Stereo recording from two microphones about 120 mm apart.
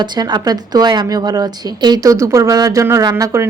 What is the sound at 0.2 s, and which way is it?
A woman's voice, 35° right (ahead or behind).